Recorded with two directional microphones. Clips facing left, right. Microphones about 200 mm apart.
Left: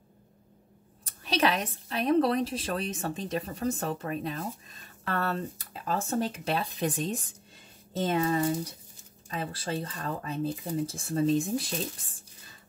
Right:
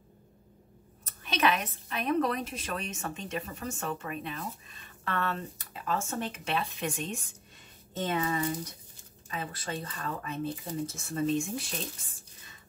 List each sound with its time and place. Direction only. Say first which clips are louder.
1.0 s a woman's voice: left 2 dB; 35° left (ahead or behind)